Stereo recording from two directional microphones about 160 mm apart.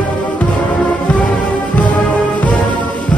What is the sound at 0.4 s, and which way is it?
Music, 10° left (ahead or behind).